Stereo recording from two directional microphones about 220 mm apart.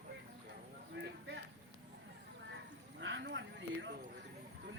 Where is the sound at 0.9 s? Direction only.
55° right (ahead or behind).